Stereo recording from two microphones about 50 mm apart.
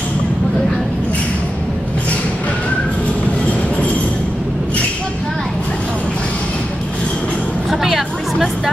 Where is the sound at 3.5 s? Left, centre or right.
Left.